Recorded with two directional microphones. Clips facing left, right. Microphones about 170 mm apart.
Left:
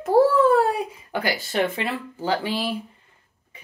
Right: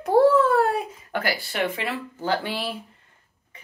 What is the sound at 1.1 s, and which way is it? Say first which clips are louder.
Speech: left 2 dB; 20° left (ahead or behind).